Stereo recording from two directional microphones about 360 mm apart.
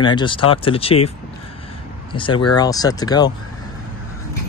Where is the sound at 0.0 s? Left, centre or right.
Centre.